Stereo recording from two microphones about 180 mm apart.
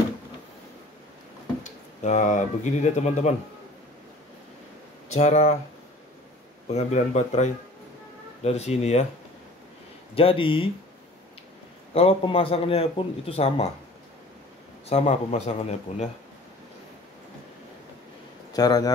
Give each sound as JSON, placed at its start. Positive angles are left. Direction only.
{"t": 2.0, "sound": "a man's voice", "side_deg": 45}
{"t": 5.1, "sound": "a man's voice", "side_deg": 40}
{"t": 6.7, "sound": "a man's voice", "side_deg": 40}
{"t": 10.1, "sound": "speech", "side_deg": 30}
{"t": 11.9, "sound": "a man's voice", "side_deg": 35}
{"t": 14.9, "sound": "a man's voice", "side_deg": 35}
{"t": 18.5, "sound": "speech", "side_deg": 20}